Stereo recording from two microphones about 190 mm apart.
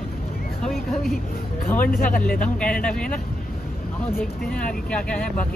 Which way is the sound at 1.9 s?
50° left (ahead or behind).